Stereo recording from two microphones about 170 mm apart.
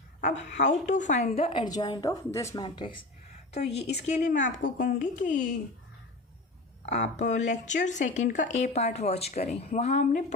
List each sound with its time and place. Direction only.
0.2 s a woman's voice: 45° left (ahead or behind); by 2.6 s 15° left (ahead or behind)
2.6 s a woman's voice: 30° left (ahead or behind)
4.2 s speech: 55° left (ahead or behind); by 5.4 s 75° left (ahead or behind)
6.8 s speech: 40° left (ahead or behind)